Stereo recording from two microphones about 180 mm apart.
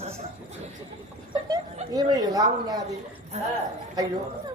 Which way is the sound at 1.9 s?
20° right (ahead or behind).